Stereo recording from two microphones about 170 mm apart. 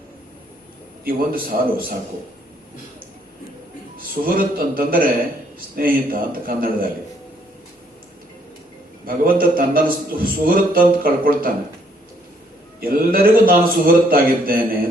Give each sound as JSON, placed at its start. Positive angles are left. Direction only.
{"t": 1.0, "sound": "a man's voice", "side_deg": -60}
{"t": 3.9, "sound": "a man's voice", "side_deg": -55}
{"t": 9.0, "sound": "a man's voice", "side_deg": -55}
{"t": 12.8, "sound": "a man's voice", "side_deg": -60}